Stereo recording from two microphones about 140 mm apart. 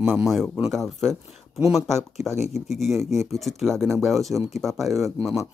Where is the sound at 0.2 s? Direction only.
Centre (ahead or behind).